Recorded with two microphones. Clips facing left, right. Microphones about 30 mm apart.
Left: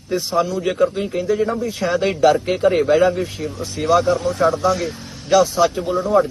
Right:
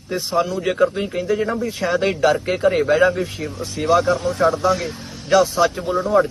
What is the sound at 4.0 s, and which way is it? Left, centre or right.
Speech, right.